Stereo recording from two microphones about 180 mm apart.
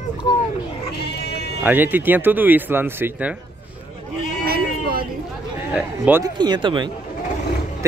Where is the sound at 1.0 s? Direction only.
65° left (ahead or behind).